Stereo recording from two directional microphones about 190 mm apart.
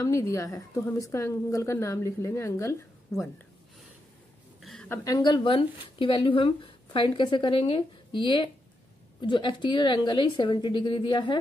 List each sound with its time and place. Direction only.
0.0 s a woman's voice: 15° left (ahead or behind)
4.6 s a sound: centre (ahead or behind)
4.8 s speech: 15° left (ahead or behind)